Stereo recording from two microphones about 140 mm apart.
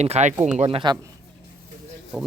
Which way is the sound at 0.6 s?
40° right (ahead or behind).